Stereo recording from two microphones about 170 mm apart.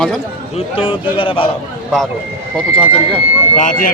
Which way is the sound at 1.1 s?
30° left (ahead or behind).